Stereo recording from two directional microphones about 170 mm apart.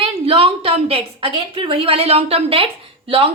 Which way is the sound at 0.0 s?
35° right (ahead or behind).